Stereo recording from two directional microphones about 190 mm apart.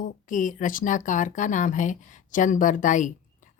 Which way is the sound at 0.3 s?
40° left (ahead or behind).